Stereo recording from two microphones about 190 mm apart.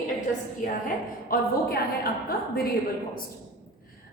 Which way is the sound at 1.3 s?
50° left (ahead or behind).